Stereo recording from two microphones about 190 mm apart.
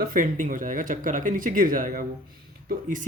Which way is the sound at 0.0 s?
45° right (ahead or behind).